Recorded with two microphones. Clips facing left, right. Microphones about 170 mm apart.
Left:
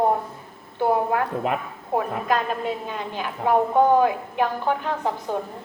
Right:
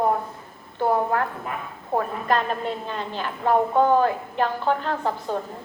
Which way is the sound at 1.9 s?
10° left (ahead or behind).